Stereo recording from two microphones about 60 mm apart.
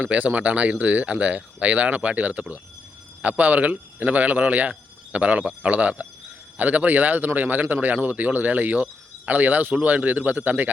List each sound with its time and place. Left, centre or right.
0.1 s speech: right